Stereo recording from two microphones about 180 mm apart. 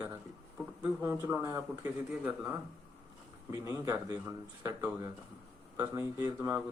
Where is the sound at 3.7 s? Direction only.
15° right (ahead or behind).